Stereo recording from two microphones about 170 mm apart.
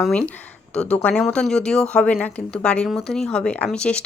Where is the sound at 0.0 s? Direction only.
5° left (ahead or behind).